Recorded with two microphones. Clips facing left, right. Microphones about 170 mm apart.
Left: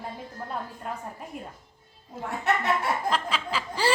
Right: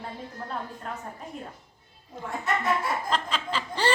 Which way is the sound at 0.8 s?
10° left (ahead or behind).